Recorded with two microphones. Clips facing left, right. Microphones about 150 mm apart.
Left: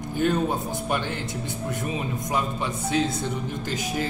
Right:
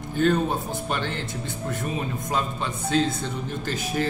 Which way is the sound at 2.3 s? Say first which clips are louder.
Left 2 dB; 15° left (ahead or behind).